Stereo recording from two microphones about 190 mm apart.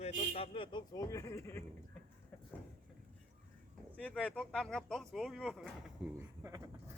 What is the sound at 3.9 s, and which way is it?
Speech, 5° left (ahead or behind).